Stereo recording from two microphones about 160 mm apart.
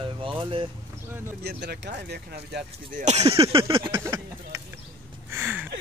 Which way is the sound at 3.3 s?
35° right (ahead or behind).